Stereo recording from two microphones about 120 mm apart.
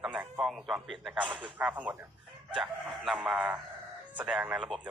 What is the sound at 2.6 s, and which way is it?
A man's voice, centre (ahead or behind).